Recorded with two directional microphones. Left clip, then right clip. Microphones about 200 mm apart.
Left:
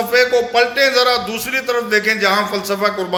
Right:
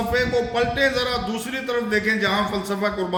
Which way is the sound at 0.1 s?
20° right (ahead or behind).